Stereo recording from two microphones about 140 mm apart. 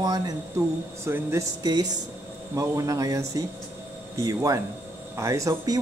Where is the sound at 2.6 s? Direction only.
25° right (ahead or behind).